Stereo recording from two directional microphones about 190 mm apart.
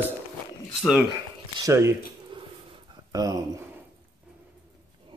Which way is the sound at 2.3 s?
25° right (ahead or behind).